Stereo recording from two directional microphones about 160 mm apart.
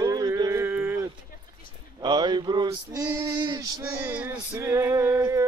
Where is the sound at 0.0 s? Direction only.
20° right (ahead or behind).